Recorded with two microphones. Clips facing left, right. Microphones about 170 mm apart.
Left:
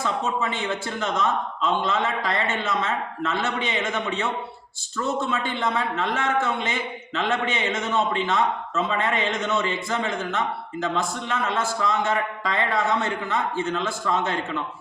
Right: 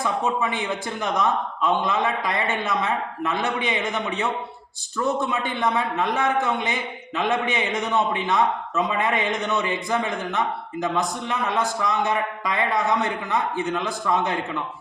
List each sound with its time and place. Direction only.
0.0 s a man's voice: 15° right (ahead or behind)